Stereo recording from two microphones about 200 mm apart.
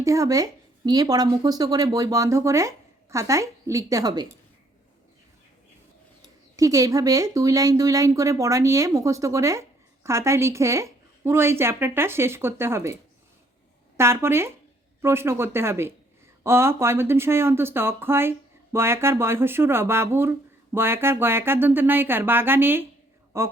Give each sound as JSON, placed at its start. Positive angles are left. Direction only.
{"t": 0.0, "sound": "speech", "side_deg": -15}
{"t": 6.6, "sound": "speech", "side_deg": -15}